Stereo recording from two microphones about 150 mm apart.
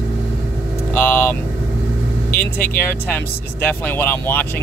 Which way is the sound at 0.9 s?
10° left (ahead or behind).